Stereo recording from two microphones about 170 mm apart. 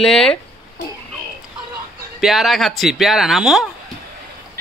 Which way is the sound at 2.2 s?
Centre (ahead or behind).